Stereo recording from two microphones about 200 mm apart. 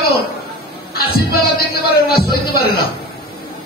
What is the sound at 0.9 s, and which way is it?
Speech, 50° left (ahead or behind).